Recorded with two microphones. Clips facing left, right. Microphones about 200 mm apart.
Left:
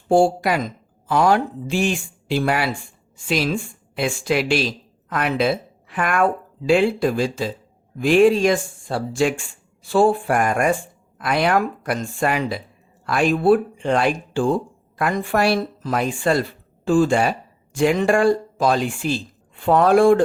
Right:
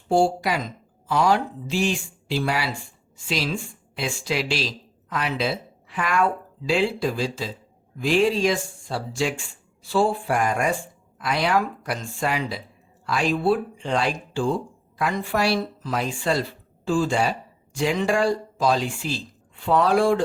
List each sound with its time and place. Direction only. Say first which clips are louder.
0.1 s a woman's voice: left 4 dB; 50° left (ahead or behind)